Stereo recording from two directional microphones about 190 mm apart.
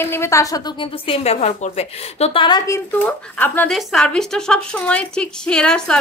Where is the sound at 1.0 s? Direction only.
30° left (ahead or behind).